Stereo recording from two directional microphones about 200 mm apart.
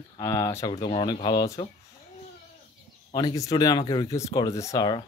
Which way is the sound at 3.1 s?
20° left (ahead or behind).